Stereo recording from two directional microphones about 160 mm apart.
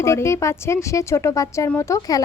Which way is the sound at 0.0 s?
15° left (ahead or behind).